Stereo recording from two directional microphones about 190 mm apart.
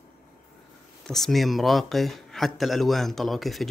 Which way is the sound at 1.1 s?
Centre (ahead or behind).